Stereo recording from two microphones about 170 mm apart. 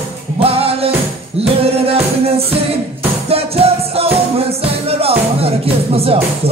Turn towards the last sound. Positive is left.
turn(degrees=-35)  # may be behind; listen again after turning